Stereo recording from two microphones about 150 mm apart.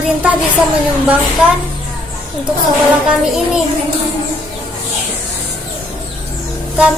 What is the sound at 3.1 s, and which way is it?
Speech, 5° right (ahead or behind).